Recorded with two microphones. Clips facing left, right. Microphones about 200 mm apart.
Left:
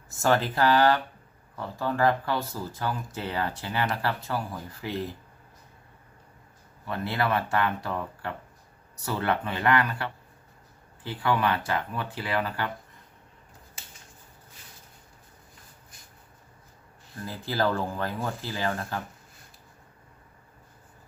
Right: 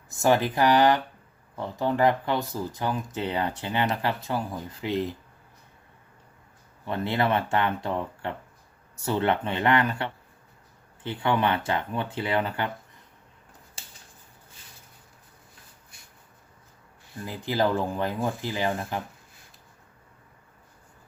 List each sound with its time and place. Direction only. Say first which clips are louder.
0.1 s speech: right 2 dB; 15° right (ahead or behind)
6.8 s speech: right 3 dB; 20° right (ahead or behind)
13.8 s a sound: right 1 dB; 30° right (ahead or behind)
17.2 s speech: right 2 dB; 15° right (ahead or behind)